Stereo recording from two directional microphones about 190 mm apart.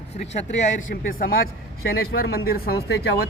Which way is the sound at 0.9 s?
50° left (ahead or behind).